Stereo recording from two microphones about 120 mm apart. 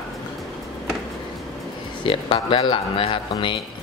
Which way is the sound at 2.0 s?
45° left (ahead or behind).